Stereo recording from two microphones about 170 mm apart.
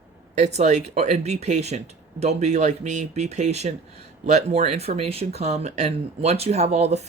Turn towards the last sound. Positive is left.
turn(degrees=-40)  # may be behind; listen again after turning